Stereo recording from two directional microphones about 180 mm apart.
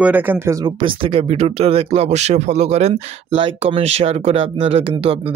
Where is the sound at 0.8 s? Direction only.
30° right (ahead or behind).